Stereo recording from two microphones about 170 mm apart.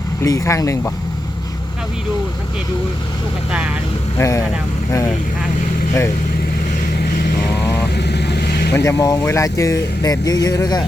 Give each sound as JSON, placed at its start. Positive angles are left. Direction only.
{"t": 0.2, "sound": "speech", "side_deg": 20}
{"t": 4.2, "sound": "speech", "side_deg": 20}
{"t": 7.9, "sound": "vehicle", "side_deg": 80}
{"t": 8.7, "sound": "speech", "side_deg": 15}